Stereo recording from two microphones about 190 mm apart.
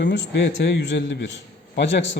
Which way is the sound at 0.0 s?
65° left (ahead or behind).